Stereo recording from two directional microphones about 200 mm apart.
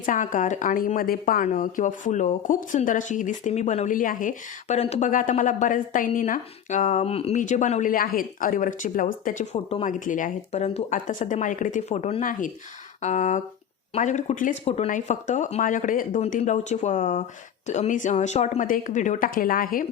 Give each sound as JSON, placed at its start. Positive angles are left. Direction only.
{"t": 0.0, "sound": "a woman's voice", "side_deg": 40}